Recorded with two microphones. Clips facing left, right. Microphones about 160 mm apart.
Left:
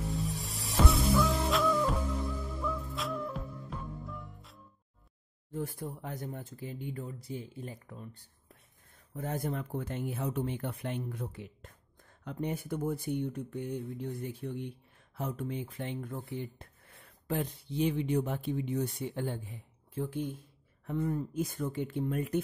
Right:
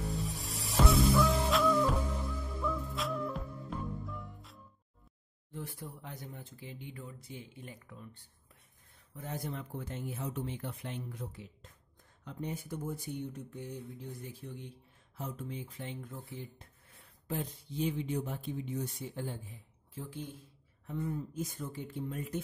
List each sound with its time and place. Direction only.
0.0 s music: centre (ahead or behind)
5.5 s speech: 45° left (ahead or behind)
9.1 s speech: 50° left (ahead or behind)